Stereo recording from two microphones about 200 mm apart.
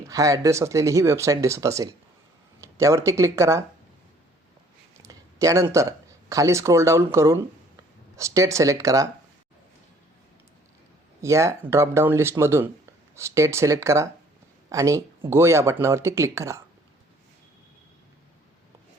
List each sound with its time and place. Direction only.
0.1 s speech: 15° right (ahead or behind)
4.9 s speech: 15° right (ahead or behind)
11.2 s speech: 15° right (ahead or behind)